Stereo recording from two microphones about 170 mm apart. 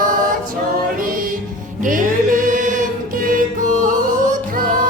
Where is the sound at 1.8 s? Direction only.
50° right (ahead or behind).